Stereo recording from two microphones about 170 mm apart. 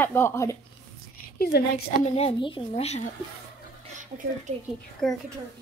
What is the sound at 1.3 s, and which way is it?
Speech, 65° left (ahead or behind).